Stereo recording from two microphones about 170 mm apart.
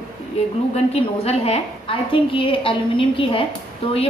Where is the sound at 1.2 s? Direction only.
35° left (ahead or behind).